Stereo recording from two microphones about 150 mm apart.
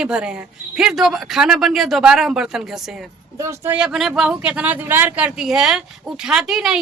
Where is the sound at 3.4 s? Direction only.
20° right (ahead or behind).